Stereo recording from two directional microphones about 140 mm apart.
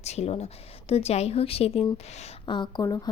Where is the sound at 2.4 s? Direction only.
35° left (ahead or behind).